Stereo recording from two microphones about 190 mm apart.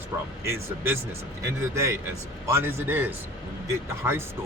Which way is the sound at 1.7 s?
15° right (ahead or behind).